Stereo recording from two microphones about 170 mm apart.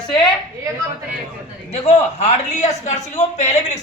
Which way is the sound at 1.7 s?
40° left (ahead or behind).